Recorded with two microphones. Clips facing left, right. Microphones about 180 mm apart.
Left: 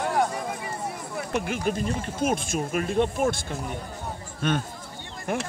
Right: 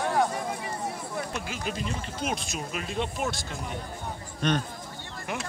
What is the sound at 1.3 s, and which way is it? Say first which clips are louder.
Speech: left 7 dB; 55° left (ahead or behind).